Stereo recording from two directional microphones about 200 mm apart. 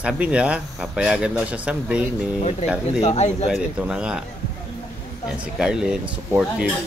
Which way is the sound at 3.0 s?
35° left (ahead or behind).